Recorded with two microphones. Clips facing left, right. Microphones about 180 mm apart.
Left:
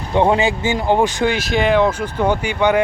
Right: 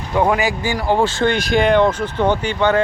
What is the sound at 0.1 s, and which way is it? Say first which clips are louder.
Speech: left 2 dB; 25° left (ahead or behind).